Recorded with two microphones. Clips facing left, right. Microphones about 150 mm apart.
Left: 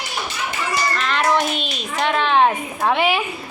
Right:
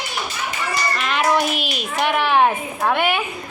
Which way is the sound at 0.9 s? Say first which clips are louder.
Right 1 dB; 10° right (ahead or behind).